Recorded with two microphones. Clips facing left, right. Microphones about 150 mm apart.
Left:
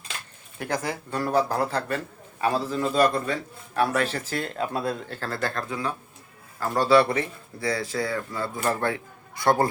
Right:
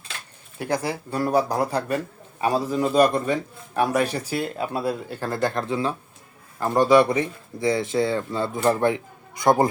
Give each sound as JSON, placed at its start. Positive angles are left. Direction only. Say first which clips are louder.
{"t": 0.6, "sound": "a man's voice", "louder": "right 3 dB", "side_deg": -10}